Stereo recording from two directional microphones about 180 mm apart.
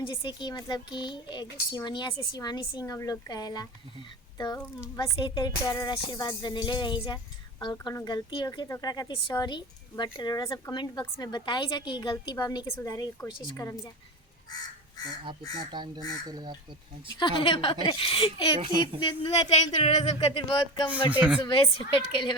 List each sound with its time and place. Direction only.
0.0 s a woman's voice: 30° left (ahead or behind)
15.7 s speech: 25° right (ahead or behind)
17.2 s a woman's voice: 25° left (ahead or behind)
21.1 s speech: 10° right (ahead or behind)
21.4 s a woman's voice: 25° left (ahead or behind)